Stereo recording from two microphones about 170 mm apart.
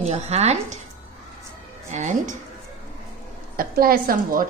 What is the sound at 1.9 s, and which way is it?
Speech, 45° right (ahead or behind).